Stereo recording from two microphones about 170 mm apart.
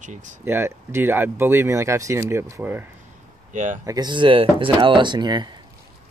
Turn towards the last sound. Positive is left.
turn(degrees=-25)  # may be behind; listen again after turning